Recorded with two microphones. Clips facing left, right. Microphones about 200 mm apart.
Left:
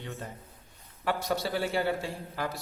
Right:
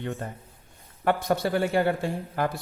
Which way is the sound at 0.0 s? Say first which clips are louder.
Right 7 dB; 50° right (ahead or behind).